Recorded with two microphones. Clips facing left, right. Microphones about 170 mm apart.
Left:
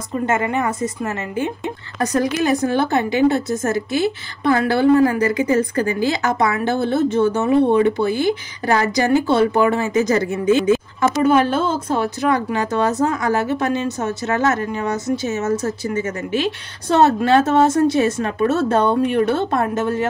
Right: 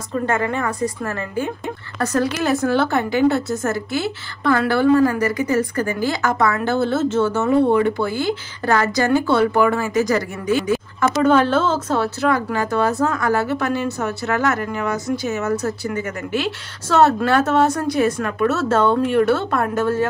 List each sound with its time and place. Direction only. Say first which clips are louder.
0.3 s a woman's voice: left 3 dB; 20° left (ahead or behind)
11.2 s a woman's voice: right 1 dB; 10° left (ahead or behind)